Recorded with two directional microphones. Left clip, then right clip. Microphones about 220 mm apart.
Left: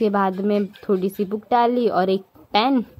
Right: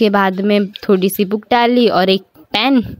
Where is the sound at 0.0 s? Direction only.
35° right (ahead or behind).